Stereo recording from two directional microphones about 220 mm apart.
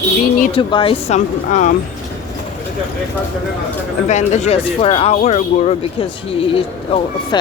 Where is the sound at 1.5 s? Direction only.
35° left (ahead or behind).